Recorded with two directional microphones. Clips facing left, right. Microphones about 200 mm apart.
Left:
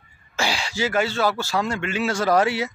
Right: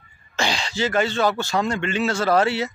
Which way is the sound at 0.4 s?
10° left (ahead or behind).